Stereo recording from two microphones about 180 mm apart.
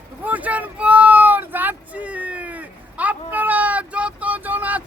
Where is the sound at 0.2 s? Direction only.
10° right (ahead or behind).